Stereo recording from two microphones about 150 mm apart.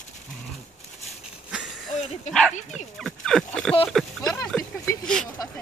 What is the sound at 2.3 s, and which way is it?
Speech, 5° left (ahead or behind).